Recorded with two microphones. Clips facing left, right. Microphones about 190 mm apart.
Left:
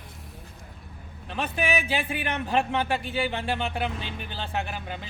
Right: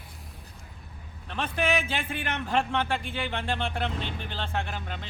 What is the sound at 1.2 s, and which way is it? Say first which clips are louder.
A man's voice: even; 10° left (ahead or behind).